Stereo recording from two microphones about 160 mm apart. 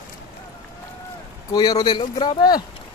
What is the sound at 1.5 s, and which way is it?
Speech, 25° left (ahead or behind).